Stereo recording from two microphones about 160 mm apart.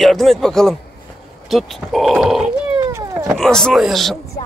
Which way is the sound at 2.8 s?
20° right (ahead or behind).